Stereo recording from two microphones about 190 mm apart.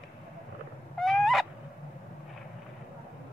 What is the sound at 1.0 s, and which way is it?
Owl, centre (ahead or behind).